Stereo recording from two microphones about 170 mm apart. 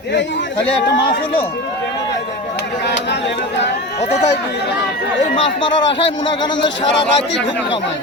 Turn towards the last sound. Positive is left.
turn(degrees=90)